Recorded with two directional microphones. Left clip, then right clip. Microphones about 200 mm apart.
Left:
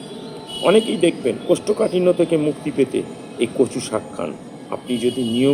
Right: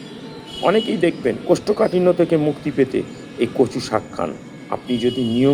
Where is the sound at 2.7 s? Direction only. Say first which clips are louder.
Right 1 dB; 45° right (ahead or behind).